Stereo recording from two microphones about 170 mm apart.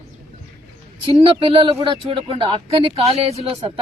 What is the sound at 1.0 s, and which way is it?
Speech, 30° right (ahead or behind).